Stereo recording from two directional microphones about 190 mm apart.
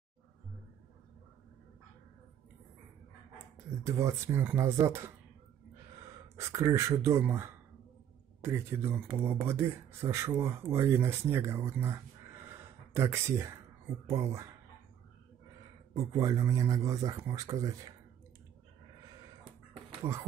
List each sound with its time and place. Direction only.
3.8 s speech: 15° right (ahead or behind)
6.3 s speech: 15° right (ahead or behind)
15.9 s speech: 15° right (ahead or behind)